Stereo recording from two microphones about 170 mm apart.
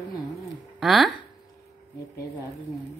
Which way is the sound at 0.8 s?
Centre (ahead or behind).